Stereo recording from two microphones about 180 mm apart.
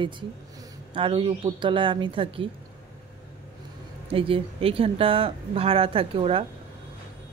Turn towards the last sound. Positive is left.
turn(degrees=-30)  # may be behind; listen again after turning